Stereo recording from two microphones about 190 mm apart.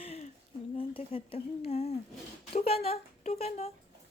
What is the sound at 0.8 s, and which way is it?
Speech, 30° left (ahead or behind).